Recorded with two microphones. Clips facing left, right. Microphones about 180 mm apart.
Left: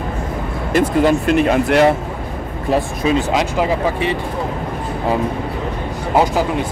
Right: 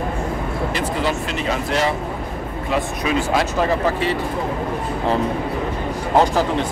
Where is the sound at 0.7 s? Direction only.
50° left (ahead or behind).